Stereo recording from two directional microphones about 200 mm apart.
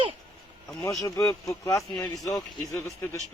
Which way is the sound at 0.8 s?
15° left (ahead or behind).